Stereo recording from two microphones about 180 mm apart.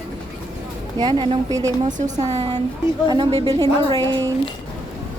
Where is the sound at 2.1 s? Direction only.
40° right (ahead or behind).